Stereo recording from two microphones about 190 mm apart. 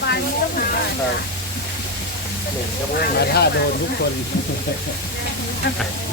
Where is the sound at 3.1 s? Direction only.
55° left (ahead or behind).